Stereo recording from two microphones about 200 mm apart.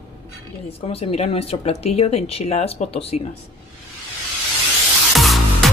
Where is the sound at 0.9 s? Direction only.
30° left (ahead or behind).